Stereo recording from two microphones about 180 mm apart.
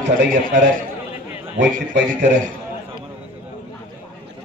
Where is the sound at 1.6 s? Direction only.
75° right (ahead or behind).